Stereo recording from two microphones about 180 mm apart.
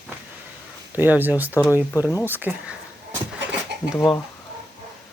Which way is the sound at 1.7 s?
15° left (ahead or behind).